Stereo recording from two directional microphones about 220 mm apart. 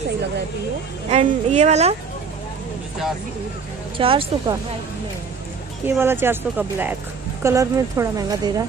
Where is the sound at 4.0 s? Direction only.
25° right (ahead or behind).